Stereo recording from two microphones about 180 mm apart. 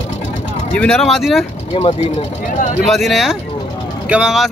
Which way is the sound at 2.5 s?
45° left (ahead or behind).